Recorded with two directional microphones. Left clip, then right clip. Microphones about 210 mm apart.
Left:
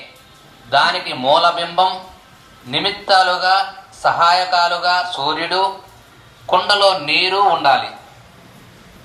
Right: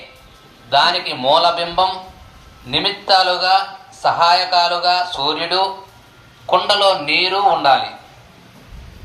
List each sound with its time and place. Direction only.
0.7 s speech: 20° right (ahead or behind)